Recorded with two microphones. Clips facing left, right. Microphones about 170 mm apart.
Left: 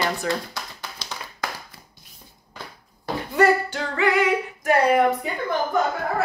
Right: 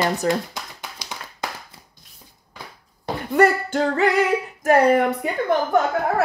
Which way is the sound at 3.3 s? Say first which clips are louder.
Right 2 dB; 45° right (ahead or behind).